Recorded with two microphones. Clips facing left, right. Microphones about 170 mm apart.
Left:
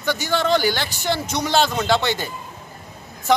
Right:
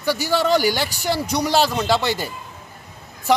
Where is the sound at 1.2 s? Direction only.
35° right (ahead or behind).